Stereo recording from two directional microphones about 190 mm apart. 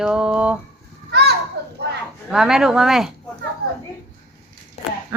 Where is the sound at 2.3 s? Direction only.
5° right (ahead or behind).